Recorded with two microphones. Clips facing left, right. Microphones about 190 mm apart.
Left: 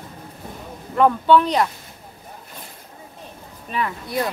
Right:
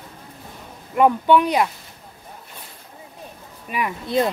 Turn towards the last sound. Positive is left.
turn(degrees=-20)  # may be behind; listen again after turning